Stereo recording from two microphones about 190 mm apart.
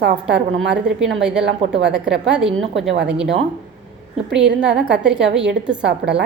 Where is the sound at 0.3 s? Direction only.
70° right (ahead or behind).